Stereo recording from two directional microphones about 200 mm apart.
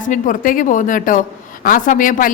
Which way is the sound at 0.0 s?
40° left (ahead or behind).